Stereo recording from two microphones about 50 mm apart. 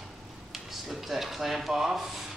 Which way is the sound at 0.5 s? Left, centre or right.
Centre.